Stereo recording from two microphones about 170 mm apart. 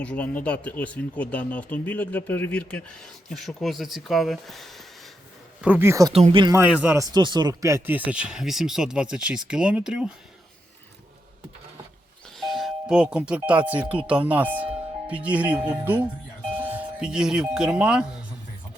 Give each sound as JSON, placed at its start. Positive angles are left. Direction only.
{"t": 0.0, "sound": "speech", "side_deg": 10}
{"t": 5.6, "sound": "speech", "side_deg": -10}
{"t": 6.1, "sound": "speech", "side_deg": -35}
{"t": 6.5, "sound": "speech", "side_deg": -10}
{"t": 12.4, "sound": "doorbell", "side_deg": 0}
{"t": 13.7, "sound": "speech", "side_deg": -10}